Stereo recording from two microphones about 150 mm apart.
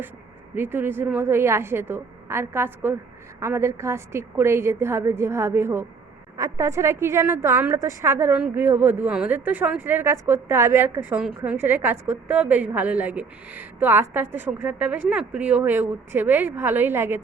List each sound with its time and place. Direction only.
0.5 s a woman's voice: 15° right (ahead or behind)